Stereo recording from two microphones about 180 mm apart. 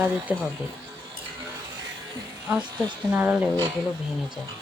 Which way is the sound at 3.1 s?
10° right (ahead or behind).